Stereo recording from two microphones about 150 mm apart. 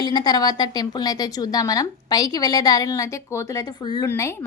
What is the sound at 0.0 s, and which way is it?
A woman's voice, 30° left (ahead or behind).